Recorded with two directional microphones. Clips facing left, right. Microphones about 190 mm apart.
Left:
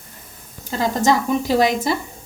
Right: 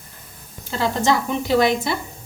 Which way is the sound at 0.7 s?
40° left (ahead or behind).